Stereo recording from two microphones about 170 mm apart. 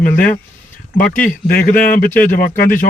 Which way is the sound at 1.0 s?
10° left (ahead or behind).